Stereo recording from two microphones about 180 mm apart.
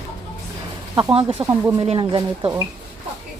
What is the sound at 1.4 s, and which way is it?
Speech, 20° right (ahead or behind).